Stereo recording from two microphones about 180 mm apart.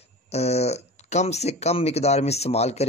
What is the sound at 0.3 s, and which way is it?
A man's voice, 35° left (ahead or behind).